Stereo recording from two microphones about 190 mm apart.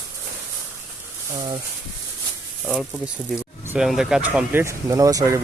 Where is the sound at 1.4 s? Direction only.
25° right (ahead or behind).